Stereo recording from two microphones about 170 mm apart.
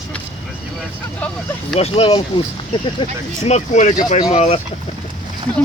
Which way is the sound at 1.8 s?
35° left (ahead or behind).